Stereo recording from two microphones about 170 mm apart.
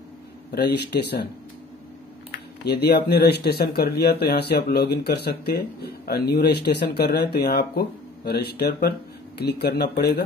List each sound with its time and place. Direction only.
0.5 s speech: 70° left (ahead or behind)
2.6 s speech: 70° left (ahead or behind)